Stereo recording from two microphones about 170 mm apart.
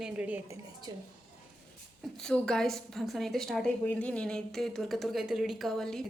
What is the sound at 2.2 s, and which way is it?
A woman's voice, 5° left (ahead or behind).